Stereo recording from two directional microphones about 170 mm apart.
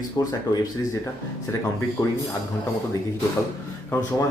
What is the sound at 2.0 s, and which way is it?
Speech, 15° left (ahead or behind).